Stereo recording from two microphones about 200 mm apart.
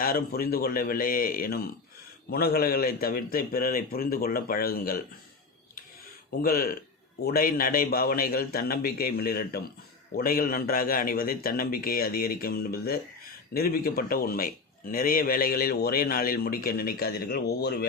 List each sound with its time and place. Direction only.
0.0 s speech: 50° left (ahead or behind)
6.4 s speech: 45° left (ahead or behind)